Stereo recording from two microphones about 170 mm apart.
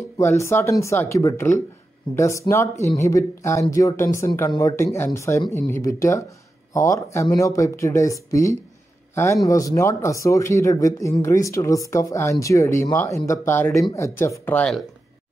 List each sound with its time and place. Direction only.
0.2 s a man's voice: 15° left (ahead or behind)